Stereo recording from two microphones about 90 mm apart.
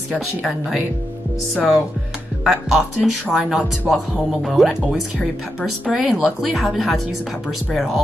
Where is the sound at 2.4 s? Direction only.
5° right (ahead or behind).